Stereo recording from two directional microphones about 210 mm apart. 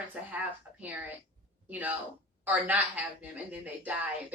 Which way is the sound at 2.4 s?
10° right (ahead or behind).